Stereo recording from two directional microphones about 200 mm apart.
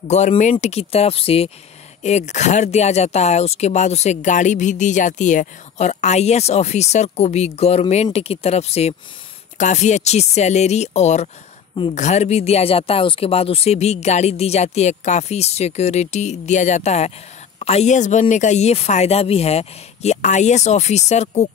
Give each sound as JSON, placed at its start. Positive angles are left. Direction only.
{"t": 0.1, "sound": "speech", "side_deg": 35}